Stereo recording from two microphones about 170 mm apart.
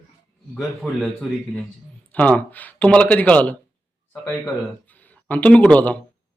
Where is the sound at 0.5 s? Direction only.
10° left (ahead or behind).